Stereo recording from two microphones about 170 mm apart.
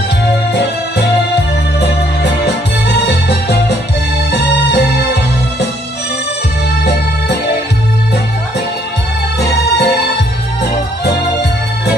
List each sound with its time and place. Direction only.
0.5 s music: 75° left (ahead or behind)
9.4 s music: 75° left (ahead or behind)